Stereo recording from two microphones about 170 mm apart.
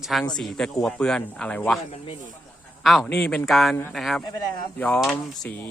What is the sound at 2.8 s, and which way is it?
Speech, centre (ahead or behind).